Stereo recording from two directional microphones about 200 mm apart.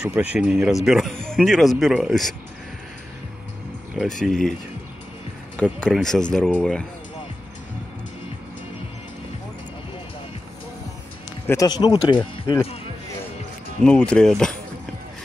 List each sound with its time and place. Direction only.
0.0 s speech: 5° right (ahead or behind)
3.9 s speech: centre (ahead or behind)
5.6 s speech: 5° left (ahead or behind)
11.4 s speech: 15° left (ahead or behind)
13.8 s speech: 5° left (ahead or behind)